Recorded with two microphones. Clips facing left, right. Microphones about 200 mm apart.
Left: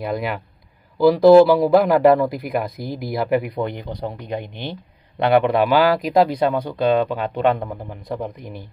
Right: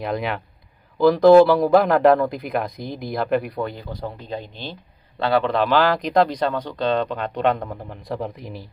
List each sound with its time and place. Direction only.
0.1 s speech: centre (ahead or behind)